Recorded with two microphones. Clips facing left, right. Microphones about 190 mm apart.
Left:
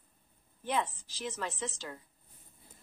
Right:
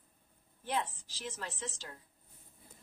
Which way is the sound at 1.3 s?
65° left (ahead or behind).